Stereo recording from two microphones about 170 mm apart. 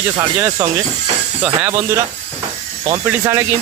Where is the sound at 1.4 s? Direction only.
10° right (ahead or behind).